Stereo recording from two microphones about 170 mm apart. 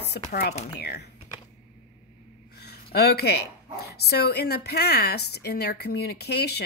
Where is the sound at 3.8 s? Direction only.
75° left (ahead or behind).